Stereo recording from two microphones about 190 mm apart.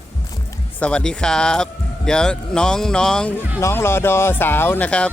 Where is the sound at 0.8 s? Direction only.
5° left (ahead or behind).